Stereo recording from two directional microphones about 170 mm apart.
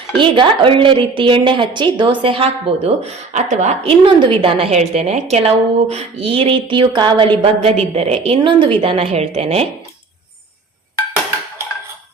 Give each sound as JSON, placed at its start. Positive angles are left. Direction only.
{"t": 0.2, "sound": "a woman's voice", "side_deg": -30}